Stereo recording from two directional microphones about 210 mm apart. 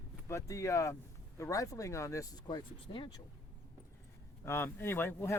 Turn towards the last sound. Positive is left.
turn(degrees=10)  # may be behind; listen again after turning